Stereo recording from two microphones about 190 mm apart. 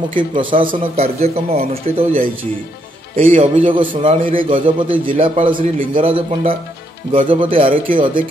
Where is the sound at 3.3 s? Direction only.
30° right (ahead or behind).